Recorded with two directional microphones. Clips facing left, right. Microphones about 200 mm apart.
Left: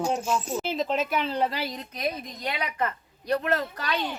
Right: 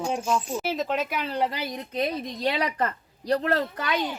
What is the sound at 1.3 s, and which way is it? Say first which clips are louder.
Speech: even; 15° right (ahead or behind).